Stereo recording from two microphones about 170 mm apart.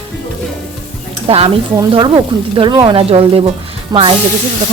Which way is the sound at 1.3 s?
35° right (ahead or behind).